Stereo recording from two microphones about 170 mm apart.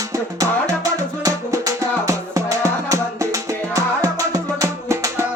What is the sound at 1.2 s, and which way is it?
Music, 20° right (ahead or behind).